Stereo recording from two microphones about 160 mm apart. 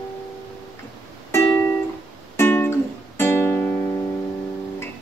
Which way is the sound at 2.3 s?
15° left (ahead or behind).